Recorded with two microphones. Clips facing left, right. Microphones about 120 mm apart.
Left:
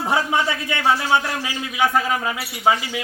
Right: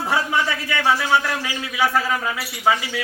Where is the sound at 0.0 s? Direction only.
20° left (ahead or behind).